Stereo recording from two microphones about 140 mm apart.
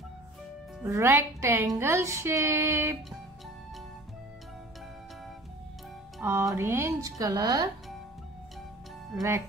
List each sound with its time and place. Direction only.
0.8 s a woman's voice: 20° right (ahead or behind)
6.2 s speech: 20° right (ahead or behind)